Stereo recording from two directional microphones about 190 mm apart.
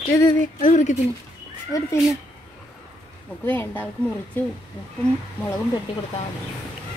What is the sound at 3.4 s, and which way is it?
A woman's voice, 10° left (ahead or behind).